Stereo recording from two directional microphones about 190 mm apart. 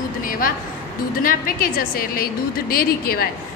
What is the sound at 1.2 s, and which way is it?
A woman's voice, 50° left (ahead or behind).